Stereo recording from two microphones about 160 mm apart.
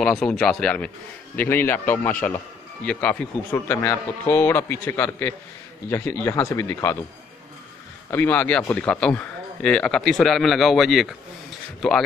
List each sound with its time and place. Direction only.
0.0 s speech: 5° left (ahead or behind)
8.1 s speech: 10° left (ahead or behind)